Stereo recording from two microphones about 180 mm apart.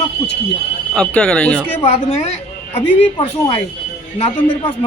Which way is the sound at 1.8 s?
35° left (ahead or behind).